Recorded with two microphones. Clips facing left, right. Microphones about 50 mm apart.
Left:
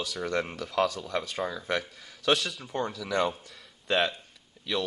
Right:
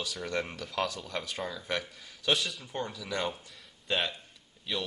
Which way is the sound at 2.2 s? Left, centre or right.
Left.